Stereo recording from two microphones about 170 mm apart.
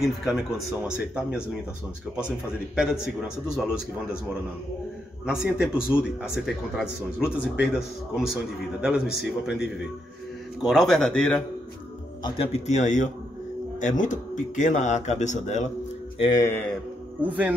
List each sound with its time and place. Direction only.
0.0 s speech: centre (ahead or behind)
5.2 s speech: 5° right (ahead or behind)
12.2 s speech: 25° left (ahead or behind)
12.5 s speech: 45° left (ahead or behind)
16.2 s speech: 25° left (ahead or behind)
17.2 s speech: 10° right (ahead or behind)